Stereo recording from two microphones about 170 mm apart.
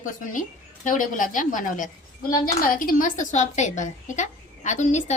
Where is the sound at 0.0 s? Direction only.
50° left (ahead or behind).